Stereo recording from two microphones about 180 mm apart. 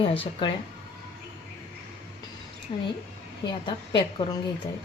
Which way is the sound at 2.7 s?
30° left (ahead or behind).